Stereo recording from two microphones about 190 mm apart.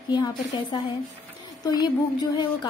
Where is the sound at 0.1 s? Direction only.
25° left (ahead or behind).